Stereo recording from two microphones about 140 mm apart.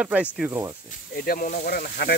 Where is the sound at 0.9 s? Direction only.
85° left.